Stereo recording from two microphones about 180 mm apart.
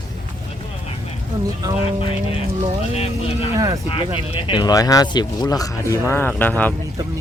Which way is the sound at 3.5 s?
20° right (ahead or behind).